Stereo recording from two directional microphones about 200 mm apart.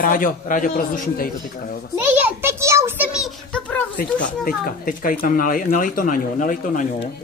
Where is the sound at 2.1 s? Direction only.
10° right (ahead or behind).